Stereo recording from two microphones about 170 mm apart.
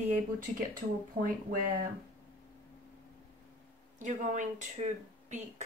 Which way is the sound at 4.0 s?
45° right (ahead or behind).